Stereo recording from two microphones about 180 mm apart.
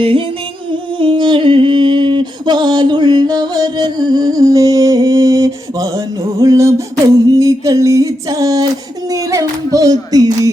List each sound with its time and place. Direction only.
0.9 s mantra: 25° right (ahead or behind)
6.4 s a sound: 15° right (ahead or behind)
7.3 s music: 20° right (ahead or behind)